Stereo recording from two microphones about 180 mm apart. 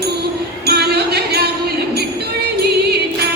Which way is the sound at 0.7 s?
60° right (ahead or behind).